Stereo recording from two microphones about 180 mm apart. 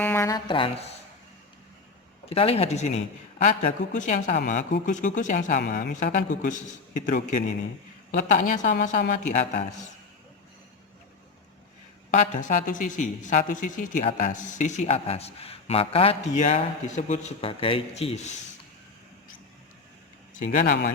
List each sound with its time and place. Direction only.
0.0 s speech: 15° left (ahead or behind)
2.3 s speech: 35° left (ahead or behind)
12.1 s speech: 45° left (ahead or behind)
20.4 s speech: 45° left (ahead or behind)